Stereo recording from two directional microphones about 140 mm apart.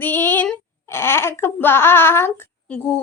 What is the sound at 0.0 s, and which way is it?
A child's voice, 15° left (ahead or behind).